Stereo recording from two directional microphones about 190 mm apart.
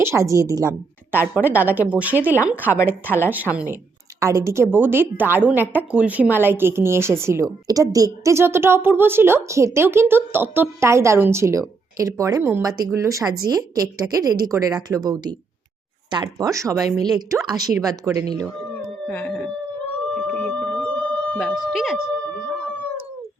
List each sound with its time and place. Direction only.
0.0 s a woman's voice: 15° right (ahead or behind)
18.7 s howl: 10° left (ahead or behind)
20.1 s a sound: 5° left (ahead or behind)